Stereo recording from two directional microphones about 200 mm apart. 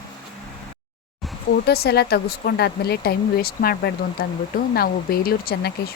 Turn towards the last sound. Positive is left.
turn(degrees=50)  # may be behind; listen again after turning